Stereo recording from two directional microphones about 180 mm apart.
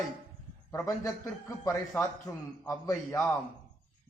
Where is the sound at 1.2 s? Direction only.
15° left (ahead or behind).